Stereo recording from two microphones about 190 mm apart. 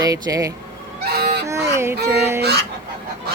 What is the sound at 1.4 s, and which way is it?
Speech, 15° right (ahead or behind).